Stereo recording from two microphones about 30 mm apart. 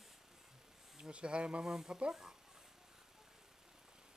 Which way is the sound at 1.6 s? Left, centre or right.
Centre.